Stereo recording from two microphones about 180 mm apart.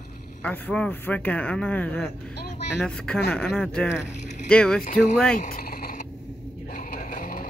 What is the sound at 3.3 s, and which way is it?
Speech, 5° left (ahead or behind).